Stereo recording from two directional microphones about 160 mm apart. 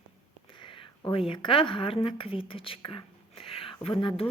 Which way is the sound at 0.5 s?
30° left (ahead or behind).